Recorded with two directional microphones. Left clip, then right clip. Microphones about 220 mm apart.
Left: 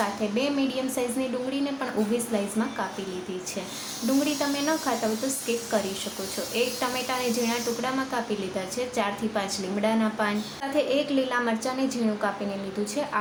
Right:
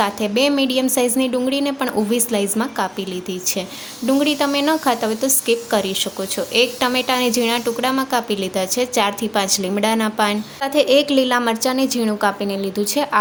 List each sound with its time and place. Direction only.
0.0 s a woman's voice: 45° right (ahead or behind)
4.2 s a woman's voice: 50° right (ahead or behind)